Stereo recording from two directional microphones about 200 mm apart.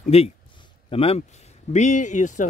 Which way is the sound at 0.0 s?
30° left (ahead or behind).